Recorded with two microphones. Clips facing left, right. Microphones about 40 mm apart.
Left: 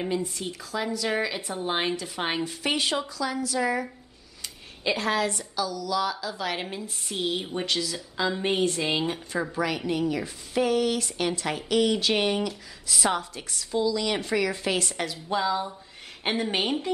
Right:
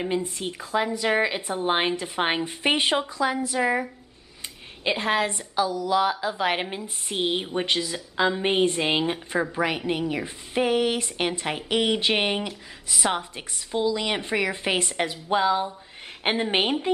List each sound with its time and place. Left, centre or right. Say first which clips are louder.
0.1 s a woman's voice: right 2 dB; right
4.8 s a woman's voice: right 2 dB; right